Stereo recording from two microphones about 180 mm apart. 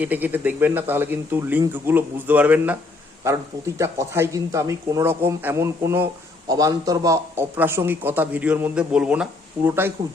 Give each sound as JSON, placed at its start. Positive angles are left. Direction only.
{"t": 0.0, "sound": "a man's voice", "side_deg": -10}
{"t": 3.8, "sound": "a man's voice", "side_deg": -15}